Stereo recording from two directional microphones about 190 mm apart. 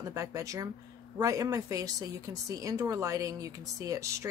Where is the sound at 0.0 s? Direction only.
15° right (ahead or behind).